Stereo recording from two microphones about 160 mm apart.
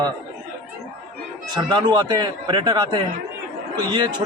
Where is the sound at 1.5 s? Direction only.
25° right (ahead or behind).